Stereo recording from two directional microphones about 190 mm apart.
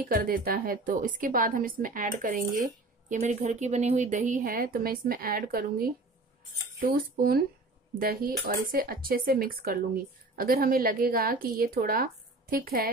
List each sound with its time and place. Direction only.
0.1 s a woman's voice: 50° right (ahead or behind)